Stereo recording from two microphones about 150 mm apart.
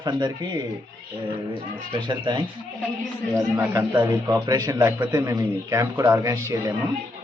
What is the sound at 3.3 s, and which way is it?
A man's voice, 15° right (ahead or behind).